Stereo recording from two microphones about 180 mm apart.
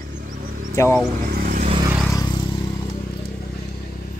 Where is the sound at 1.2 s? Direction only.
50° right (ahead or behind).